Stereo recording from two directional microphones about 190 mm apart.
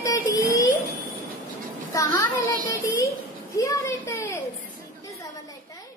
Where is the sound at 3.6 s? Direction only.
15° left (ahead or behind).